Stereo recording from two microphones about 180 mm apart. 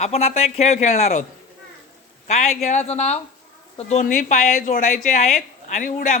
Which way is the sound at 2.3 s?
40° left (ahead or behind).